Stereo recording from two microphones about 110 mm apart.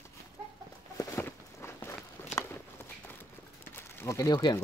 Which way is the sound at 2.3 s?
90° left.